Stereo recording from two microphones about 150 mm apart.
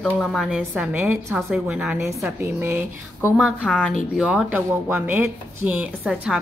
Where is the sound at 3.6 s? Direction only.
5° left (ahead or behind).